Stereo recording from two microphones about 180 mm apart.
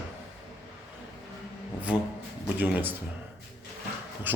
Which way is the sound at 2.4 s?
10° right (ahead or behind).